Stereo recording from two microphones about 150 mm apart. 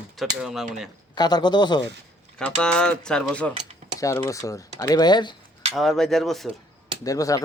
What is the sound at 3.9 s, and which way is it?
Speech, 20° left (ahead or behind).